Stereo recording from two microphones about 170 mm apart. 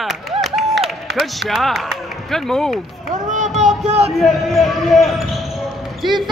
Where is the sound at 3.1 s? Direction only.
45° right (ahead or behind).